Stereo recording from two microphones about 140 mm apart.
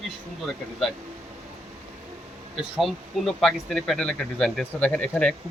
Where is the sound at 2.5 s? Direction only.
Centre (ahead or behind).